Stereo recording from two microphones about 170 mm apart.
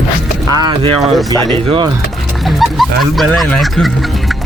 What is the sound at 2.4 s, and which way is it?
Speech, centre (ahead or behind).